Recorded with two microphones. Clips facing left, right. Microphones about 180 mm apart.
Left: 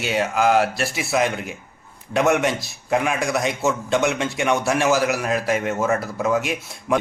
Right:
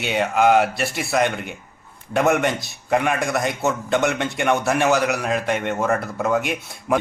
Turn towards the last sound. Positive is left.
turn(degrees=0)  # may be behind; listen again after turning